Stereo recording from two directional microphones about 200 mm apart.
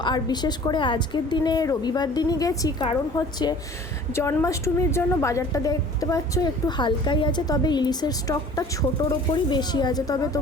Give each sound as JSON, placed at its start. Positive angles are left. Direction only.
{"t": 0.0, "sound": "a woman's voice", "side_deg": 20}